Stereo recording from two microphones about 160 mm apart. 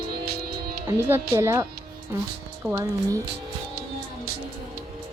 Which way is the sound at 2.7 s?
20° right (ahead or behind).